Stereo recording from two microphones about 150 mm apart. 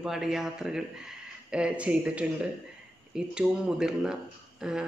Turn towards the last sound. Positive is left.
turn(degrees=-5)  # may be behind; listen again after turning